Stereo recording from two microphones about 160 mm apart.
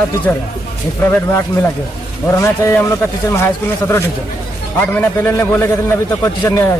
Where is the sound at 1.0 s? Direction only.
10° left (ahead or behind).